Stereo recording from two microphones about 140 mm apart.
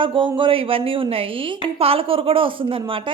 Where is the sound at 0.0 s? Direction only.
35° right (ahead or behind).